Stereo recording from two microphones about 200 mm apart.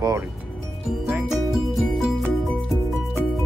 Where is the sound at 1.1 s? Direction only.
5° right (ahead or behind).